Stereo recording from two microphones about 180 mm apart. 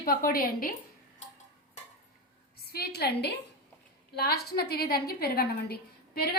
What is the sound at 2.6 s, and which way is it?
A woman's voice, 60° left (ahead or behind).